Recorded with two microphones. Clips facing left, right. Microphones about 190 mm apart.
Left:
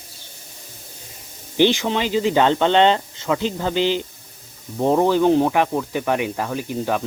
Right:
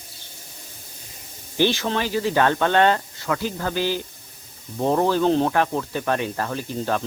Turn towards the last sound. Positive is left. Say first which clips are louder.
# left 2 dB
turn(degrees=10)  # may be behind; listen again after turning